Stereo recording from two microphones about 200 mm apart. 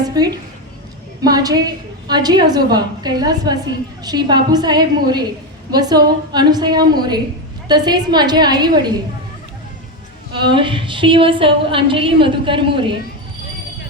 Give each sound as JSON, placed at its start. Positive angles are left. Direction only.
{"t": 0.0, "sound": "a woman's voice", "side_deg": -20}
{"t": 10.3, "sound": "a woman's voice", "side_deg": -25}